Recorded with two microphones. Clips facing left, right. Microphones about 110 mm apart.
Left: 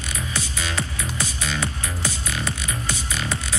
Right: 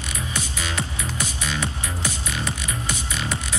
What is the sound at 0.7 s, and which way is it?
Music, 35° left (ahead or behind).